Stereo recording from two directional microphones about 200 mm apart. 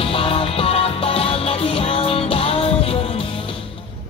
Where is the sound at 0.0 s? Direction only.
25° left (ahead or behind).